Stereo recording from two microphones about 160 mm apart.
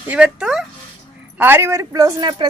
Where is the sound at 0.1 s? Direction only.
5° right (ahead or behind).